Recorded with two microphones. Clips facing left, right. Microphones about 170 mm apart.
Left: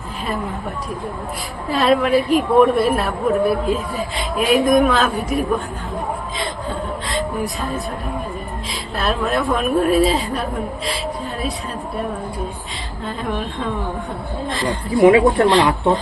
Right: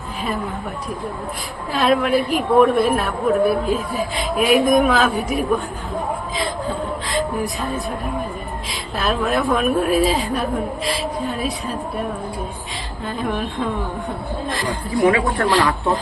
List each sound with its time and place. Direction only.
1.7 s a woman's voice: centre (ahead or behind)
6.4 s a sound: centre (ahead or behind)
9.0 s a woman's voice: centre (ahead or behind)
13.1 s a woman's voice: centre (ahead or behind)
14.8 s speech: 20° left (ahead or behind)